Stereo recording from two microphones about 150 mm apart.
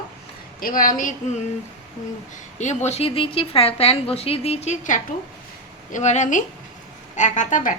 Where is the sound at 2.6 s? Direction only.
50° left (ahead or behind).